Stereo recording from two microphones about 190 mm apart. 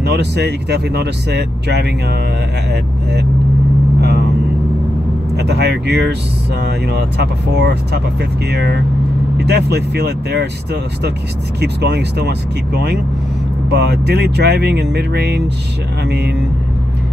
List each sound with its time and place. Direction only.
0.0 s speech: 60° right (ahead or behind)
4.0 s vehicle: 60° right (ahead or behind)
5.4 s speech: 60° right (ahead or behind)